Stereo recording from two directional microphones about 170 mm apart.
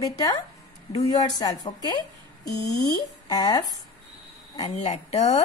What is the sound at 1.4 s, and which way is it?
Speech, 25° left (ahead or behind).